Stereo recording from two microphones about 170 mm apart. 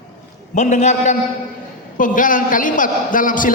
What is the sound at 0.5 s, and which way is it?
A man's voice, 45° left (ahead or behind).